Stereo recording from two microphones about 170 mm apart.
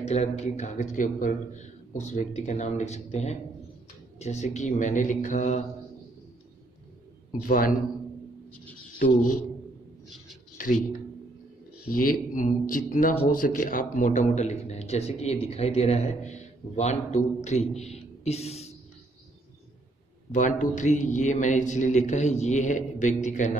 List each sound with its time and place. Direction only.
0.0 s a man's voice: 40° left (ahead or behind)
7.4 s a man's voice: 55° left (ahead or behind)
9.0 s a man's voice: 50° left (ahead or behind)
11.9 s a man's voice: 55° left (ahead or behind); by 18.7 s 40° left (ahead or behind)
20.3 s a man's voice: 45° left (ahead or behind)